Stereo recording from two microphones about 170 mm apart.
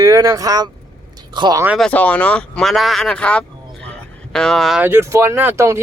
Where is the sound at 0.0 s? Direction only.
20° right (ahead or behind).